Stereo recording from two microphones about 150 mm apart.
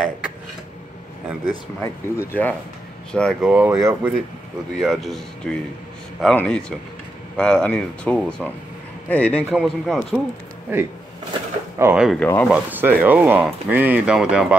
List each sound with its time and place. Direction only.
1.8 s speech: 15° left (ahead or behind)
3.3 s speech: 10° right (ahead or behind)
3.7 s speech: 20° right (ahead or behind)
4.7 s speech: centre (ahead or behind)
10.7 s speech: 15° right (ahead or behind)
12.1 s speech: 10° left (ahead or behind)
12.4 s speech: 10° right (ahead or behind)